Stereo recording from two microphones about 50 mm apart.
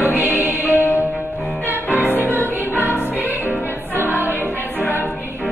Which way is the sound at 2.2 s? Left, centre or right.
Right.